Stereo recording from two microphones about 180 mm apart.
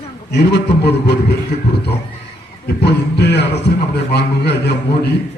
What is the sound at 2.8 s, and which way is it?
A man's voice, 65° left (ahead or behind).